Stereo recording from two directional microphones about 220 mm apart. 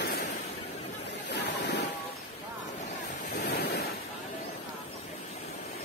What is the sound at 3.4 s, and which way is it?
Waves, 45° left (ahead or behind).